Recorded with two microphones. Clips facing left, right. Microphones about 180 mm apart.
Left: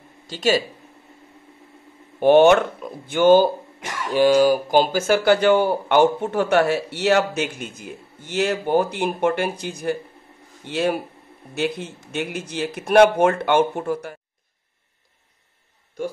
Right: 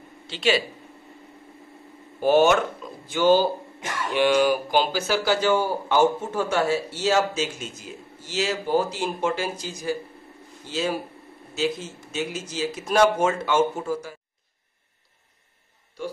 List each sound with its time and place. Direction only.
0.3 s speech: 40° left (ahead or behind)
2.1 s speech: 60° left (ahead or behind)
4.1 s speech: 40° left (ahead or behind); by 14.1 s 60° left (ahead or behind)